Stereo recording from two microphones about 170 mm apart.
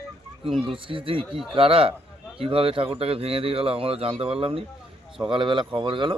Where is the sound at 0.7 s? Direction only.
30° right (ahead or behind).